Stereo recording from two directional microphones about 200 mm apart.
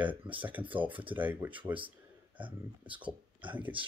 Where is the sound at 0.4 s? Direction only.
10° right (ahead or behind).